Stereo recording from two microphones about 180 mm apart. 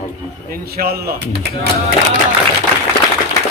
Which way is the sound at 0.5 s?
55° right (ahead or behind).